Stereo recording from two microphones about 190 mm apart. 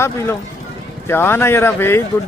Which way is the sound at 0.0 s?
15° left (ahead or behind).